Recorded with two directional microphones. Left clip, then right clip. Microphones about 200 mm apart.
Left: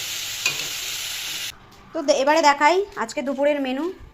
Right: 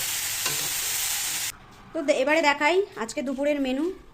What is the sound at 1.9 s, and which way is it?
A woman's voice, 5° left (ahead or behind).